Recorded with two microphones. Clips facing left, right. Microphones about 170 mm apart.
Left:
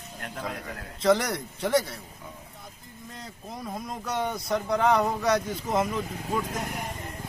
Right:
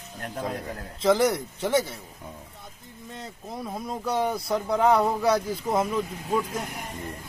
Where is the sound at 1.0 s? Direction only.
5° right (ahead or behind).